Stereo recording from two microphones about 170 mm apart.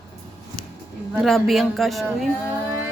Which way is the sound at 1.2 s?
Centre (ahead or behind).